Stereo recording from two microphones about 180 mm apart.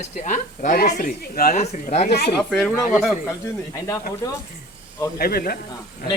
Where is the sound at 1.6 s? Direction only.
40° left (ahead or behind).